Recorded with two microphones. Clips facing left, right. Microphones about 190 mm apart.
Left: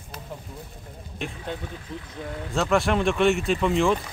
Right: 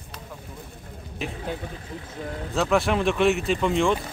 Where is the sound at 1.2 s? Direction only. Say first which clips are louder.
Right 1 dB; centre (ahead or behind).